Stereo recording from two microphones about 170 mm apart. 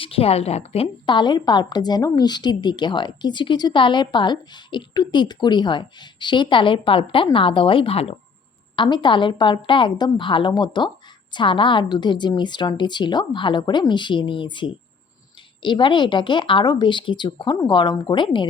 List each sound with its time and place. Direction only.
0.0 s a woman's voice: 35° left (ahead or behind)